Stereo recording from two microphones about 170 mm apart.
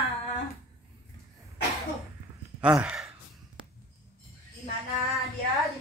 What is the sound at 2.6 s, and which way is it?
Sigh, 5° right (ahead or behind).